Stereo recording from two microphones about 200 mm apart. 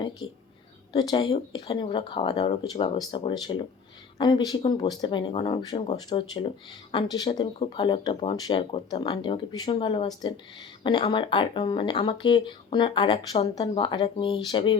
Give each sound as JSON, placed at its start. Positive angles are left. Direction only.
{"t": 0.9, "sound": "speech", "side_deg": 20}